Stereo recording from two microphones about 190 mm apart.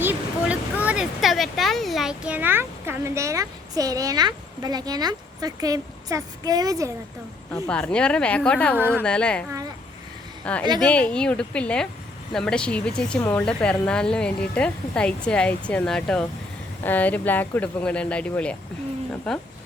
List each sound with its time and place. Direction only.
0.0 s speech: 10° right (ahead or behind)
7.5 s speech: 5° left (ahead or behind)
8.7 s a woman's voice: 10° right (ahead or behind)
9.0 s speech: 5° left (ahead or behind)